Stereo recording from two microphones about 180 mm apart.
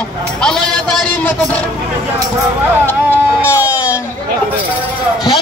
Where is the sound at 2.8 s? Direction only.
15° right (ahead or behind).